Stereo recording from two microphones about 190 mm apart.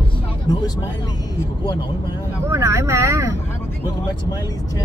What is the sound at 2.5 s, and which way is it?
Speech, 15° right (ahead or behind).